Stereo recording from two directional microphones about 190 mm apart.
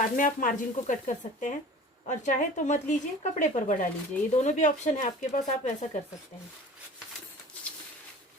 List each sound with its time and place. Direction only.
0.2 s speech: 45° left (ahead or behind)